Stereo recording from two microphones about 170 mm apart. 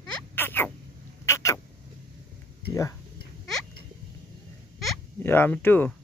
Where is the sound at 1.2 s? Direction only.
15° left (ahead or behind).